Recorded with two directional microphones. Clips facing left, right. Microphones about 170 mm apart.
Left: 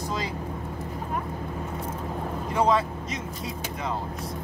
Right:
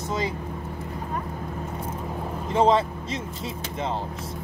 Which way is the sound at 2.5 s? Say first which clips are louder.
Right 3 dB; 25° right (ahead or behind).